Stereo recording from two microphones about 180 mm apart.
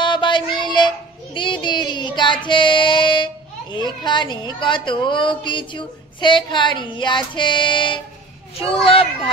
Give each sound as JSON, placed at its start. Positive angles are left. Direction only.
{"t": 0.0, "sound": "child singing", "side_deg": 25}
{"t": 3.7, "sound": "speech", "side_deg": 25}